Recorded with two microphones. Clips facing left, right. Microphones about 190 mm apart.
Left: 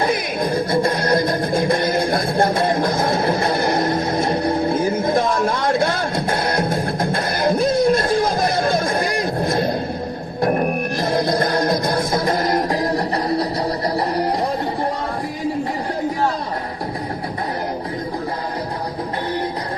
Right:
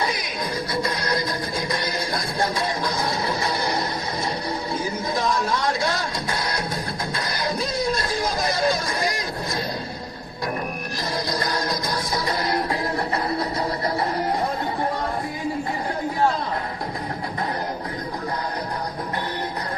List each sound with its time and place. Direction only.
0.0 s music: 50° left (ahead or behind)